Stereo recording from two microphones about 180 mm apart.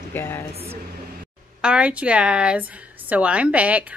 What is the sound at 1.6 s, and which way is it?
A woman's voice, 5° right (ahead or behind).